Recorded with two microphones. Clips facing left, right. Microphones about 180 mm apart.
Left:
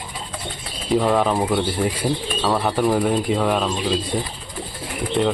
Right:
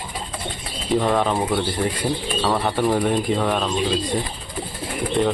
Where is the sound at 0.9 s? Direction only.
5° left (ahead or behind).